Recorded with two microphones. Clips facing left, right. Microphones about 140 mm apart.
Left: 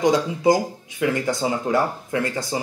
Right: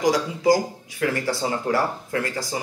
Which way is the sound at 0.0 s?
25° left (ahead or behind).